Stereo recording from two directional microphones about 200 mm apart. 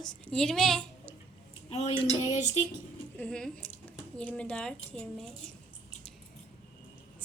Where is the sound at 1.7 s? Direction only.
30° left (ahead or behind).